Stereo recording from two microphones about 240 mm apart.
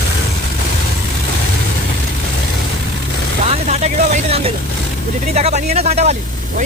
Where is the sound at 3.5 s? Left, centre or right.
Right.